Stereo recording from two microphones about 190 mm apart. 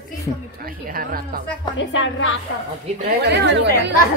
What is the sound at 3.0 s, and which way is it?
Speech, 60° right (ahead or behind).